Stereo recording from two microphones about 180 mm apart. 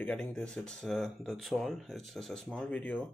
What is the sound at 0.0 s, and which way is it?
Speech, 5° left (ahead or behind).